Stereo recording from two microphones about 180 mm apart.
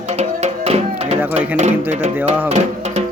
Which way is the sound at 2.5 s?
40° right (ahead or behind).